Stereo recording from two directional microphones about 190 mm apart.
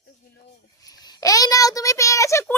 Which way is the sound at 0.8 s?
20° left (ahead or behind).